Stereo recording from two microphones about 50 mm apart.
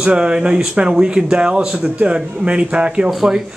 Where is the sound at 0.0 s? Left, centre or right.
Centre.